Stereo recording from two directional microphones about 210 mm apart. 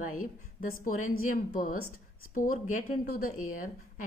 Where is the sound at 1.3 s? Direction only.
40° left (ahead or behind).